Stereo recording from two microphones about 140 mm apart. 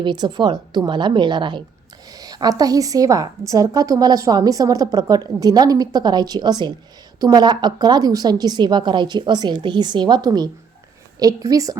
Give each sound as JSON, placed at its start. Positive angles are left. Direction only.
{"t": 0.0, "sound": "a woman's voice", "side_deg": -30}